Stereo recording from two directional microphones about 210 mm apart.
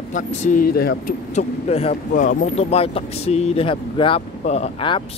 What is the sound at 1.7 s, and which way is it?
Speech, 30° left (ahead or behind).